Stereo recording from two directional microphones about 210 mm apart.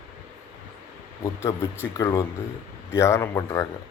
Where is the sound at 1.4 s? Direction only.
15° left (ahead or behind).